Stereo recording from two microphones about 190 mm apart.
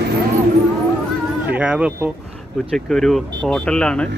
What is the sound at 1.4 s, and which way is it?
Speech, 5° right (ahead or behind).